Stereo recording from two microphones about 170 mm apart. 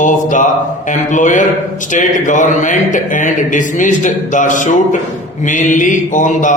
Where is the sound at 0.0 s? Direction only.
45° left (ahead or behind).